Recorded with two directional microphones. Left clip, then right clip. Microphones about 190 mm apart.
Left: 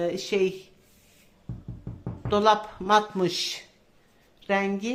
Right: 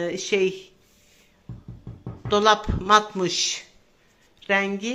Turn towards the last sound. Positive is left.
turn(degrees=0)  # may be behind; listen again after turning